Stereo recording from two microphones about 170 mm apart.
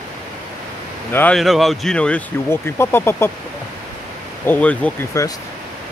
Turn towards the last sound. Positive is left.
turn(degrees=20)  # may be behind; listen again after turning